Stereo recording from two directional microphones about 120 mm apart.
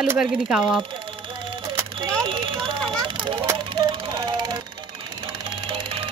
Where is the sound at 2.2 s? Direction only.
45° right (ahead or behind).